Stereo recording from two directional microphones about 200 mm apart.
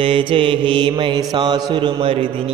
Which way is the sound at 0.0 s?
25° right (ahead or behind).